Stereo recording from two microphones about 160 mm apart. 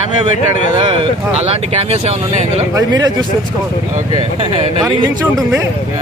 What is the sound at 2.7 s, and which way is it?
Speech, 25° right (ahead or behind).